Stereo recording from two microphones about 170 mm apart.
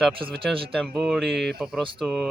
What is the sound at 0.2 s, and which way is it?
Speech, 30° right (ahead or behind).